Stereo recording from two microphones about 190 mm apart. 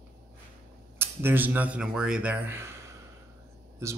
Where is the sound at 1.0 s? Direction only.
10° right (ahead or behind).